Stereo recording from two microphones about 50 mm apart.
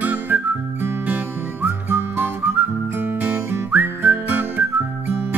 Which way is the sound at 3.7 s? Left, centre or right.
Right.